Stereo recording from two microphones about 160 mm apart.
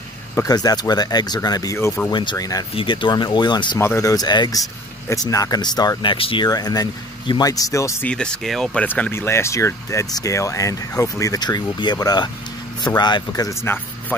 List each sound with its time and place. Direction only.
0.4 s speech: 25° left (ahead or behind)
2.7 s speech: 35° left (ahead or behind)
3.8 s speech: 20° left (ahead or behind)
8.1 s speech: 5° left (ahead or behind)